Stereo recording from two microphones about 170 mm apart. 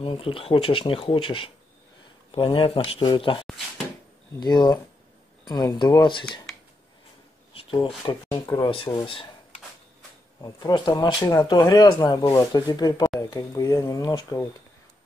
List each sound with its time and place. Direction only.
0.0 s speech: 30° left (ahead or behind)
3.4 s a sound: centre (ahead or behind)
4.4 s speech: 25° left (ahead or behind)
7.5 s a sound: 30° left (ahead or behind)
8.0 s speech: 30° left (ahead or behind)
10.4 s speech: 20° left (ahead or behind)